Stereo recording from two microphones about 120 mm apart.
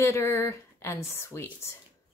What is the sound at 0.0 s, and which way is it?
Speech, 20° left (ahead or behind).